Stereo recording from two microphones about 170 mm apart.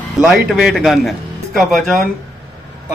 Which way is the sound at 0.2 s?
5° right (ahead or behind).